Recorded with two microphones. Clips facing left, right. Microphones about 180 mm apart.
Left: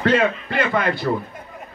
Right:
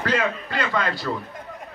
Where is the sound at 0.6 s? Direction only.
20° left (ahead or behind).